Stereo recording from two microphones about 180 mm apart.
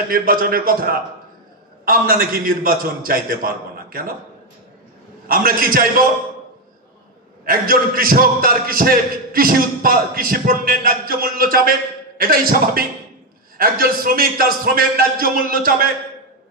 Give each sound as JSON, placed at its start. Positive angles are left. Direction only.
{"t": 0.1, "sound": "a man's voice", "side_deg": -55}
{"t": 5.3, "sound": "a man's voice", "side_deg": -55}
{"t": 7.4, "sound": "a man's voice", "side_deg": -55}